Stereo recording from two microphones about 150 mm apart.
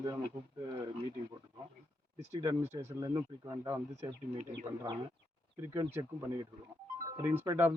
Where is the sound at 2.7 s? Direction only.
20° right (ahead or behind).